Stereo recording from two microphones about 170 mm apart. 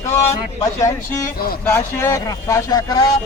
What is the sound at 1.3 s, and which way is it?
Speech, 60° left (ahead or behind).